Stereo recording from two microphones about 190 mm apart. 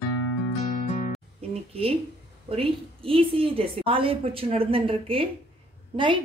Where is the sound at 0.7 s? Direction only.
45° left (ahead or behind).